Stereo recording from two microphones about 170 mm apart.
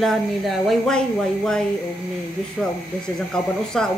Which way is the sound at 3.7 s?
Centre (ahead or behind).